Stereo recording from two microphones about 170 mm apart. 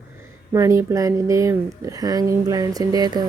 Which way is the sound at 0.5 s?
15° right (ahead or behind).